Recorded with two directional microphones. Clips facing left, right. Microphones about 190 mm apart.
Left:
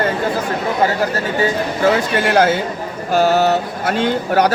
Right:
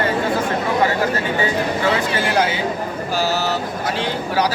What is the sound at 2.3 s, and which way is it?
Speech, 50° left (ahead or behind).